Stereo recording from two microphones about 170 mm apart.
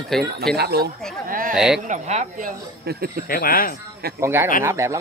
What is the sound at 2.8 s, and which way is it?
Speech, 70° right (ahead or behind).